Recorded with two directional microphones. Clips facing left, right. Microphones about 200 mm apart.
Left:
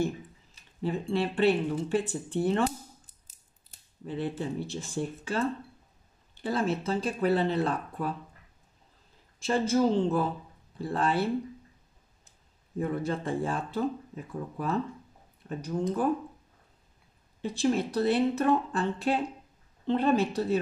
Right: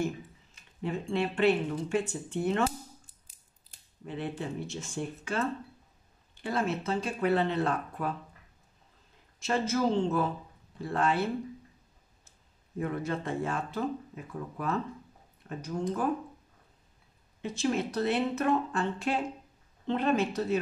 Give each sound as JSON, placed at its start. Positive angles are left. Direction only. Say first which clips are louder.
{"t": 0.8, "sound": "speech", "louder": "left 2 dB", "side_deg": 35}
{"t": 4.0, "sound": "speech", "louder": "left 3 dB", "side_deg": 35}
{"t": 6.4, "sound": "speech", "louder": "left 2 dB", "side_deg": 30}
{"t": 9.4, "sound": "speech", "louder": "left 3 dB", "side_deg": 30}
{"t": 12.7, "sound": "speech", "louder": "left 2 dB", "side_deg": 30}
{"t": 17.4, "sound": "speech", "louder": "left 3 dB", "side_deg": 35}